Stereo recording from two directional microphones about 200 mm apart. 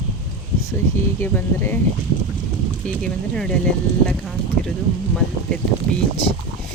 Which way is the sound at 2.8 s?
5° left (ahead or behind).